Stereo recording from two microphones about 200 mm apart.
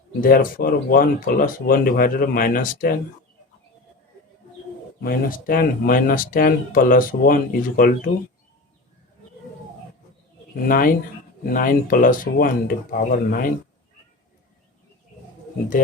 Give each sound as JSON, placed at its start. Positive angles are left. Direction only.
{"t": 0.2, "sound": "speech", "side_deg": 45}
{"t": 5.0, "sound": "speech", "side_deg": 45}
{"t": 10.7, "sound": "speech", "side_deg": 45}